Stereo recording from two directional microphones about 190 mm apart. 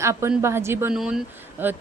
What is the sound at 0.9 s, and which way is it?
Speech, 5° right (ahead or behind).